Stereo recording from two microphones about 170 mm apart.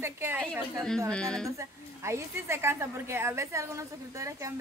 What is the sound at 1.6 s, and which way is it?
A woman's voice, 15° right (ahead or behind).